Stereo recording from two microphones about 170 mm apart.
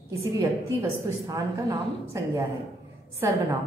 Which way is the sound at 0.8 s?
20° right (ahead or behind).